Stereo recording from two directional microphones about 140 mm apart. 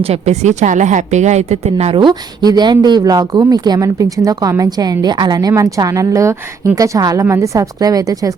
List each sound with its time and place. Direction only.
0.0 s a woman's voice: 50° right (ahead or behind)
2.0 s speech: 30° right (ahead or behind)